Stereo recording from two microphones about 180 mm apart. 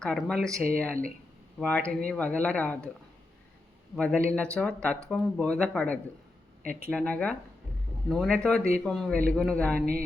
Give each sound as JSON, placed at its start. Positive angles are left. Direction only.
{"t": 0.0, "sound": "speech", "side_deg": 5}
{"t": 3.9, "sound": "speech", "side_deg": 5}
{"t": 6.6, "sound": "speech", "side_deg": -50}
{"t": 6.9, "sound": "speech", "side_deg": 5}